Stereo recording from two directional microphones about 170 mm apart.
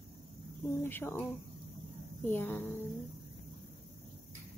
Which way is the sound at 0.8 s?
10° left (ahead or behind).